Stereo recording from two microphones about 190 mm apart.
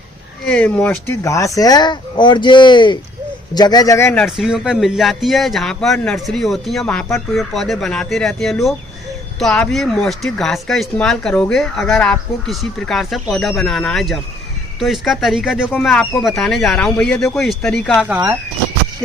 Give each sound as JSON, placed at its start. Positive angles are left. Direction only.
{"t": 0.4, "sound": "a man's voice", "side_deg": 5}